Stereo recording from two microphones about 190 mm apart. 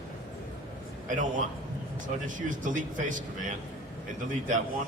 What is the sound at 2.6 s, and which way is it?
Speech, 40° right (ahead or behind).